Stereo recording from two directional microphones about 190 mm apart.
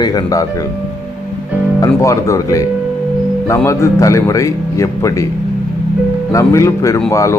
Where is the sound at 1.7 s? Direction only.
15° left (ahead or behind).